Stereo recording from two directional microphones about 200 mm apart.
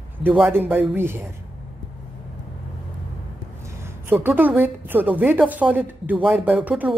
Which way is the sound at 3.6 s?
10° right (ahead or behind).